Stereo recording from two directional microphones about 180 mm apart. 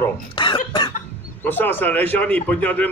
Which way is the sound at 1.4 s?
10° left (ahead or behind).